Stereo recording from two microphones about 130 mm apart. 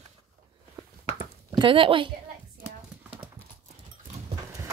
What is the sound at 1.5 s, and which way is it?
Speech, 40° right (ahead or behind).